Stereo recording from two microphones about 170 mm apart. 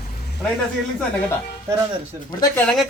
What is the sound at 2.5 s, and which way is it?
Speech, 5° left (ahead or behind).